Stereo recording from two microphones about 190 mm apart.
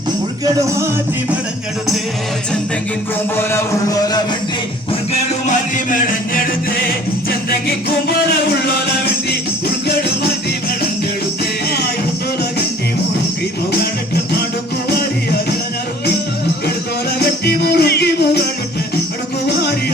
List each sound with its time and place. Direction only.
3.3 s speech: 15° left (ahead or behind)
5.5 s music: 45° left (ahead or behind)
17.2 s music: 60° left (ahead or behind)